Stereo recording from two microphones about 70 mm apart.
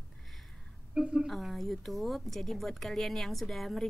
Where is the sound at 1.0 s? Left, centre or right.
Centre.